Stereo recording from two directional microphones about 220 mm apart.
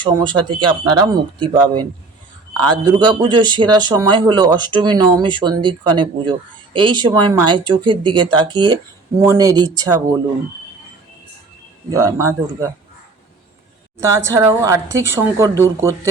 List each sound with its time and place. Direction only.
0.0 s speech: 20° right (ahead or behind)
2.6 s speech: 20° right (ahead or behind)
11.9 s speech: 15° right (ahead or behind)
14.0 s speech: 10° right (ahead or behind)